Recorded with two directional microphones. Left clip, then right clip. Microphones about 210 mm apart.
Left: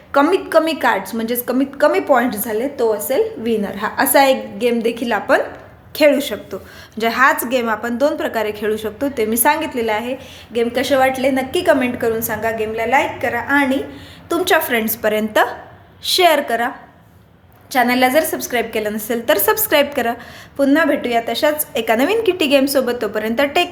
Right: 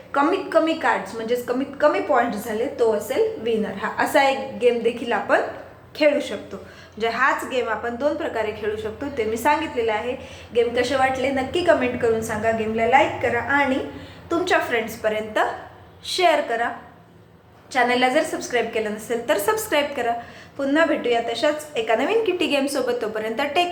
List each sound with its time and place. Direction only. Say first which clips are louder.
0.1 s a woman's voice: left 6 dB; 45° left (ahead or behind)
17.7 s a woman's voice: left 4 dB; 45° left (ahead or behind)